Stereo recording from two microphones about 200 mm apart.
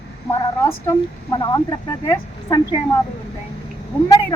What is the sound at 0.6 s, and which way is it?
Speech, 15° left (ahead or behind).